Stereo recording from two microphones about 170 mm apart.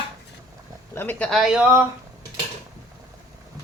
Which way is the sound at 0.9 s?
10° left (ahead or behind).